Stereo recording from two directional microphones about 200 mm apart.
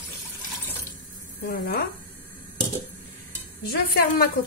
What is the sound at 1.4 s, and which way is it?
Cutlery, 50° left (ahead or behind).